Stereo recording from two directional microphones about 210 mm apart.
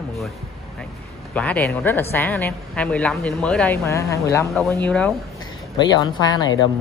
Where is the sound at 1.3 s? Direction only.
5° left (ahead or behind).